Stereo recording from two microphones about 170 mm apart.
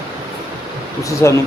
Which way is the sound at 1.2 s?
15° left (ahead or behind).